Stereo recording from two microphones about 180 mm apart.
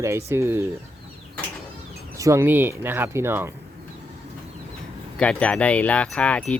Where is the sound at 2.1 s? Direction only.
15° right (ahead or behind).